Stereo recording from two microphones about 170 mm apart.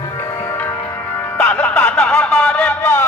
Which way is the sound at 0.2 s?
15° left (ahead or behind).